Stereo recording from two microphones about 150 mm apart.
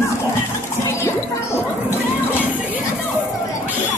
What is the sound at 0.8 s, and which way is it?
Music, 20° left (ahead or behind).